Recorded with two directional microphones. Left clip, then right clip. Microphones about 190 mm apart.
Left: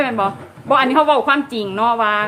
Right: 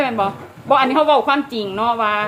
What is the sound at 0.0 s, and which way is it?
A woman's voice, 5° left (ahead or behind).